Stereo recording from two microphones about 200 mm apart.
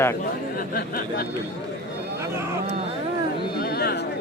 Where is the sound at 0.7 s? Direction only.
50° left (ahead or behind).